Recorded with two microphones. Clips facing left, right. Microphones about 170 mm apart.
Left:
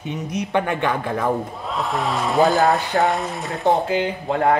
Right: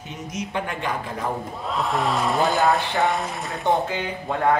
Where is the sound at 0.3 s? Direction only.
65° left (ahead or behind).